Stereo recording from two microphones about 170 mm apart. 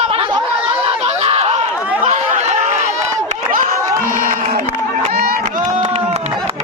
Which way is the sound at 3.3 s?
50° right (ahead or behind).